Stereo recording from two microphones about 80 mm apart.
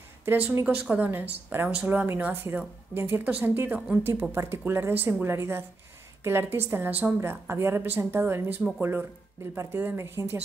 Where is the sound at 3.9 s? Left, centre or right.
Right.